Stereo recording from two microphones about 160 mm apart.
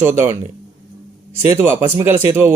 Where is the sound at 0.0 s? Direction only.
15° right (ahead or behind).